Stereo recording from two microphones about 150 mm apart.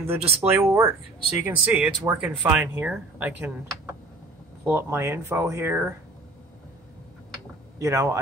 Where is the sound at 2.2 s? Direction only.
10° right (ahead or behind).